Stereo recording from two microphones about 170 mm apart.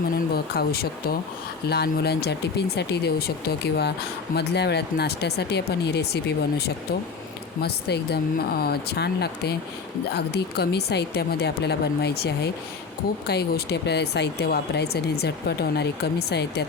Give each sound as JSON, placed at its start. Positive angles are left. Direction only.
{"t": 0.3, "sound": "speech", "side_deg": 65}